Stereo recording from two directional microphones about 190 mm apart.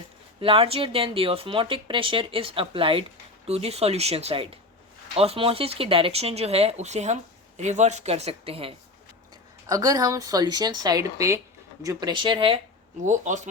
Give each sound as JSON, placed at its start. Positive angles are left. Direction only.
{"t": 0.3, "sound": "speech", "side_deg": -30}
{"t": 9.6, "sound": "speech", "side_deg": -20}
{"t": 13.0, "sound": "speech", "side_deg": -40}